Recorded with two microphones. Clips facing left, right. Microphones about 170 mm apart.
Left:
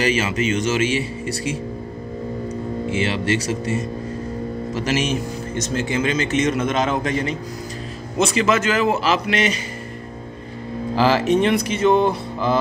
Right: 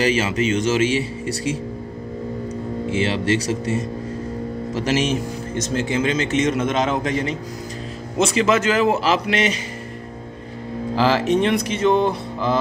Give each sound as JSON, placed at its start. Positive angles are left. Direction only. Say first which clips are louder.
{"t": 0.0, "sound": "speech", "louder": "right 1 dB", "side_deg": -30}
{"t": 2.9, "sound": "speech", "louder": "right 2 dB", "side_deg": -35}
{"t": 11.0, "sound": "speech", "louder": "left 1 dB", "side_deg": 5}